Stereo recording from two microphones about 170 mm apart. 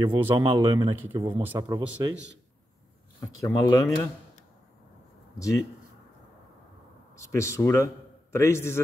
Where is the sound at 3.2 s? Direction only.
20° left (ahead or behind).